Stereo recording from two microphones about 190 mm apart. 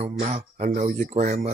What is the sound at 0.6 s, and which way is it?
Music, 45° right (ahead or behind).